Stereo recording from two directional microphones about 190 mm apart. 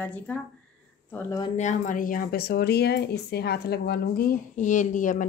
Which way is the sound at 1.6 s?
40° left (ahead or behind).